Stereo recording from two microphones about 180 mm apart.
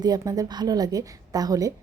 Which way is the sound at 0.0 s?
20° right (ahead or behind).